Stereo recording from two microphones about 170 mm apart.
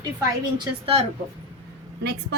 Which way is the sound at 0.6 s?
35° right (ahead or behind).